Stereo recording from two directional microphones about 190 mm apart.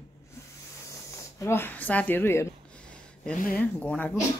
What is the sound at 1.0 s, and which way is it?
Speech, 15° left (ahead or behind).